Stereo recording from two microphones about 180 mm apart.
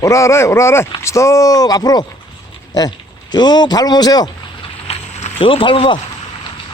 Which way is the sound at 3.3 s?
25° left (ahead or behind).